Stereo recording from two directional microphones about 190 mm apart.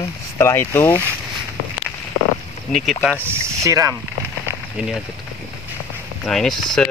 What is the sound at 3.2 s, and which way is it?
Speech, 15° right (ahead or behind).